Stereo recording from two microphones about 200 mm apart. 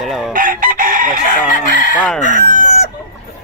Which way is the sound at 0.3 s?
45° right (ahead or behind).